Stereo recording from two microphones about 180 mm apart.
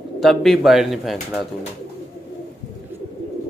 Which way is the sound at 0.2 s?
Centre (ahead or behind).